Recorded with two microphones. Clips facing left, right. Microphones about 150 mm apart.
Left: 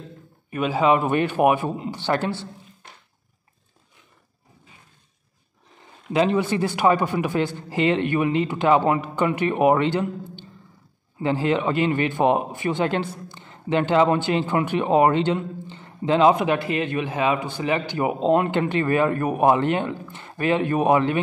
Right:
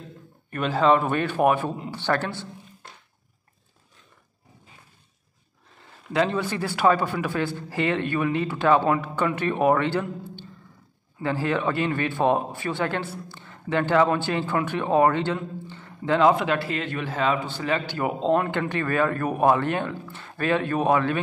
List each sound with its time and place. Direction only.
0.5 s a man's voice: 10° left (ahead or behind)
6.1 s a man's voice: 15° left (ahead or behind)